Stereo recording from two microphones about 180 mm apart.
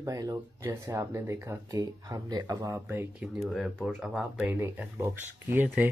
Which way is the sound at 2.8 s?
10° right (ahead or behind).